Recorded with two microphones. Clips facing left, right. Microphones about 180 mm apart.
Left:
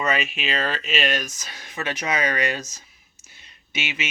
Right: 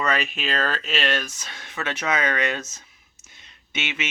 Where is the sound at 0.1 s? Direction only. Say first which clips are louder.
Even; 5° left (ahead or behind).